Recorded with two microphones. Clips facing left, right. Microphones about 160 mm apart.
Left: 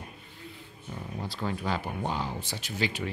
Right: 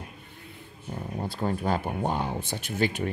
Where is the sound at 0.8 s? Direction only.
30° right (ahead or behind).